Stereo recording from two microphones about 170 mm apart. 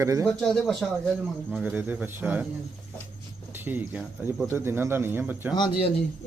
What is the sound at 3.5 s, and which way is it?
Speech, 10° right (ahead or behind).